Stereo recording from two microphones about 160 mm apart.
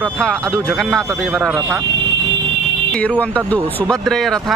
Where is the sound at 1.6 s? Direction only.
20° right (ahead or behind).